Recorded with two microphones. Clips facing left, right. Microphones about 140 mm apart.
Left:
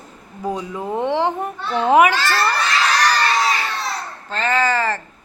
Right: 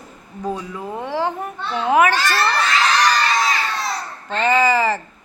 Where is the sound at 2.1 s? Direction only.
15° right (ahead or behind).